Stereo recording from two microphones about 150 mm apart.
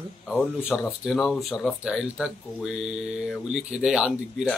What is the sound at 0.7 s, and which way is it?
Speech, centre (ahead or behind).